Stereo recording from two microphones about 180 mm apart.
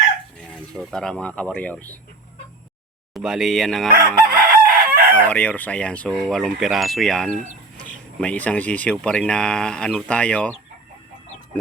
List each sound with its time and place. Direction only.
0.5 s speech: centre (ahead or behind)
3.2 s speech: centre (ahead or behind)
3.9 s chicken: 55° right (ahead or behind)
5.1 s speech: 10° left (ahead or behind)